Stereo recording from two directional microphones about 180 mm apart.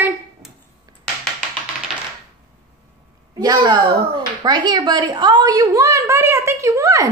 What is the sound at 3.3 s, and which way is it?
A woman's voice, 25° right (ahead or behind).